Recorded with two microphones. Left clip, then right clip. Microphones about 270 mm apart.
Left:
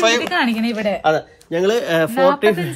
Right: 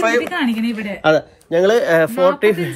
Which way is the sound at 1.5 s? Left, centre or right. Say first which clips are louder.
Right 4 dB; centre.